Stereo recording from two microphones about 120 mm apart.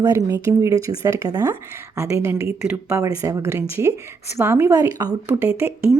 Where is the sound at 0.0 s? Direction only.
30° right (ahead or behind).